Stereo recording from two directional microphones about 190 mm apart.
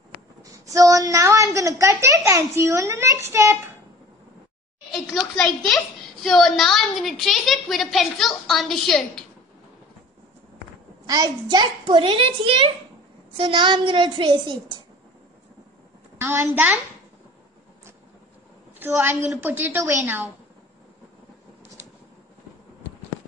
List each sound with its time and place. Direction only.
0.4 s a woman's voice: 15° right (ahead or behind)
4.9 s a woman's voice: centre (ahead or behind)
11.1 s a child's voice: 20° right (ahead or behind)
16.2 s a woman's voice: 10° right (ahead or behind)
18.8 s a woman's voice: 10° right (ahead or behind)